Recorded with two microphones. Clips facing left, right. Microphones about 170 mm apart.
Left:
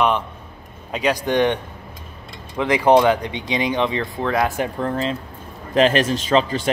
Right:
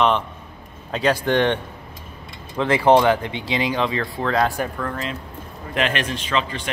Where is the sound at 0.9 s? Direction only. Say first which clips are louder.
Even; 15° left (ahead or behind).